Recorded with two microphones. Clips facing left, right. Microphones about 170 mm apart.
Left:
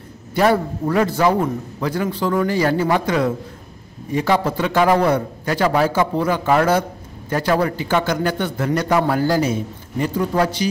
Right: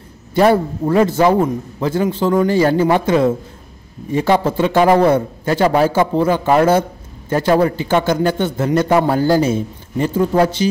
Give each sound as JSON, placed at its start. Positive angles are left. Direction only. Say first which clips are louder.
{"t": 0.3, "sound": "a man's voice", "louder": "right 4 dB", "side_deg": -25}